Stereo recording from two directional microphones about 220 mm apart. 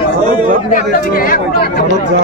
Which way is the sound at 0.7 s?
40° left (ahead or behind).